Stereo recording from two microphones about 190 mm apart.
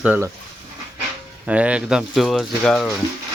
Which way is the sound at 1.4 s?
5° right (ahead or behind).